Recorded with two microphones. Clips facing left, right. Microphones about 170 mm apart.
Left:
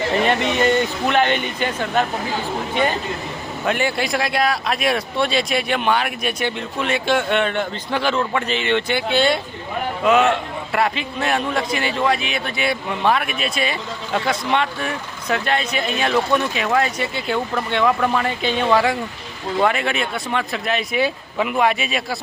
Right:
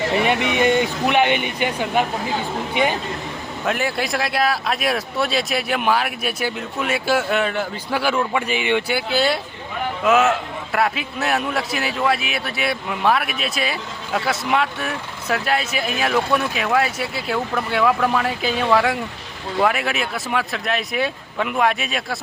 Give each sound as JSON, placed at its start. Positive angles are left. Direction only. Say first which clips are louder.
{"t": 0.1, "sound": "speech", "louder": "left 2 dB", "side_deg": -10}
{"t": 3.7, "sound": "a man's voice", "louder": "left 2 dB", "side_deg": 0}